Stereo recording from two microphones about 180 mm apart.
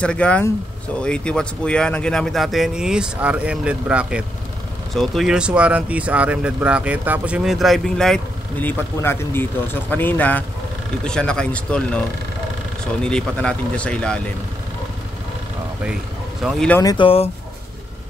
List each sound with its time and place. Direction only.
0.0 s speech: 5° left (ahead or behind)
13.0 s speech: 5° left (ahead or behind)
16.4 s speech: 5° left (ahead or behind)
16.8 s speech: 25° left (ahead or behind)